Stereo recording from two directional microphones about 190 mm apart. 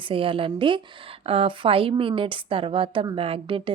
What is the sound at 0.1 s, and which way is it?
A woman's voice, 30° right (ahead or behind).